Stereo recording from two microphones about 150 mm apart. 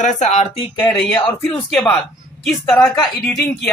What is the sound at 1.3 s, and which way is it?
Speech, 10° left (ahead or behind).